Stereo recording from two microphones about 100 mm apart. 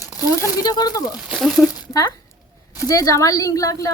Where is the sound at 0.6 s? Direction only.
40° left (ahead or behind).